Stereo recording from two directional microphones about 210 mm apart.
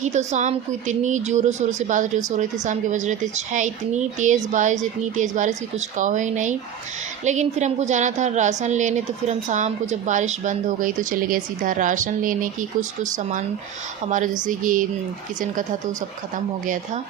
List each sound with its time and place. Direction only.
0.0 s a woman's voice: 35° right (ahead or behind)
14.4 s a woman's voice: 40° right (ahead or behind)
16.3 s a woman's voice: 40° right (ahead or behind)